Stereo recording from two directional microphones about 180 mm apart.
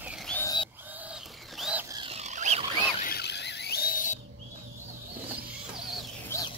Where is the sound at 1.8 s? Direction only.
25° right (ahead or behind).